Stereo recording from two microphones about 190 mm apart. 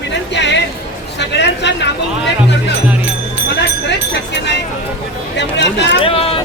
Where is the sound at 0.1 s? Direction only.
65° left (ahead or behind).